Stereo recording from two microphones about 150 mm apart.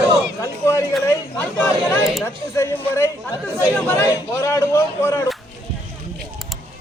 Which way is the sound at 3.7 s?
10° left (ahead or behind).